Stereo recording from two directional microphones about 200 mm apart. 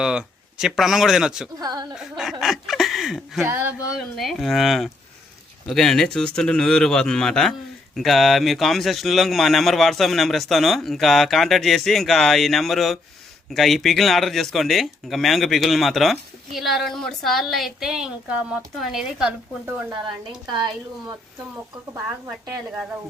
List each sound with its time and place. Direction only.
0.0 s speech: 5° right (ahead or behind)
1.5 s a woman's voice: 20° right (ahead or behind)
2.0 s speech: centre (ahead or behind)
2.4 s a sound: centre (ahead or behind)
3.5 s a woman's voice: 10° right (ahead or behind)
4.2 s speech: centre (ahead or behind)
22.3 s a woman's voice: 5° right (ahead or behind)